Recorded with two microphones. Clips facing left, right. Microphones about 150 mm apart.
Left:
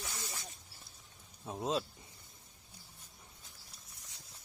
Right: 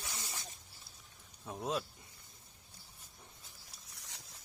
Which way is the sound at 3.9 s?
80° right.